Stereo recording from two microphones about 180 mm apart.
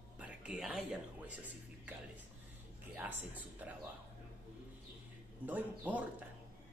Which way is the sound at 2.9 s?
10° right (ahead or behind).